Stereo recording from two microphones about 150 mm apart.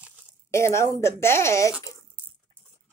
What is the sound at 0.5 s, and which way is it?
Speech, 20° left (ahead or behind).